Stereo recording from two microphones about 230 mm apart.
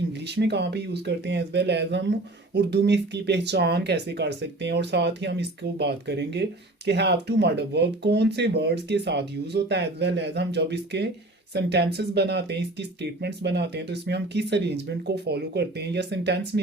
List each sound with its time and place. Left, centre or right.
0.1 s speech: right